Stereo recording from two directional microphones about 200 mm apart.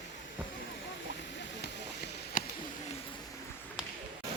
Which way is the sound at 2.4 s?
40° left (ahead or behind).